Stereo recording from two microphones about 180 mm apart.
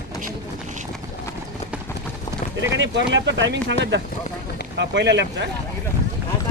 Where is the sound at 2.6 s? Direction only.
90° right.